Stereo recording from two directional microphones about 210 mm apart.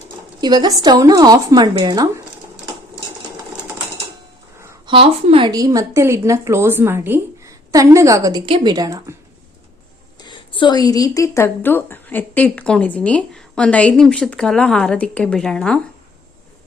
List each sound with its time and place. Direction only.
0.4 s speech: 20° right (ahead or behind)
4.6 s a sound: 15° right (ahead or behind)
4.9 s a woman's voice: 25° right (ahead or behind)
10.2 s a woman's voice: 20° left (ahead or behind); by 15.8 s 5° left (ahead or behind)